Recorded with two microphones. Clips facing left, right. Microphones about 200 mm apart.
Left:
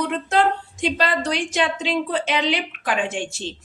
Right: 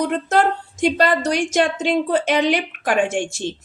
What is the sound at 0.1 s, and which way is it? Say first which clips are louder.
A woman's voice: right 2 dB; 45° right (ahead or behind).